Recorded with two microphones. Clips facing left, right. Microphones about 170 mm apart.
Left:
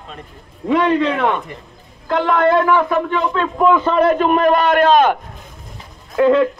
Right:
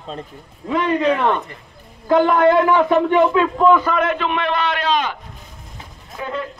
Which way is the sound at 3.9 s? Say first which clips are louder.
Left 6 dB; 40° left (ahead or behind).